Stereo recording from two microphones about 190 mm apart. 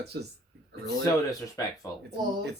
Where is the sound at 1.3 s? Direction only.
20° left (ahead or behind).